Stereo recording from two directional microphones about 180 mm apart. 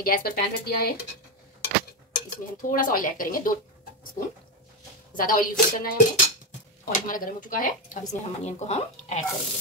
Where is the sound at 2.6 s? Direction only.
50° left (ahead or behind).